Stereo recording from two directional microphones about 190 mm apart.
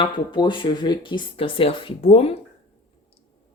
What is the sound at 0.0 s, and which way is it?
Speech, 25° left (ahead or behind).